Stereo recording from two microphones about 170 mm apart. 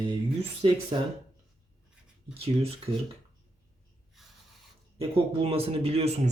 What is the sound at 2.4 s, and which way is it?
Speech, 35° right (ahead or behind).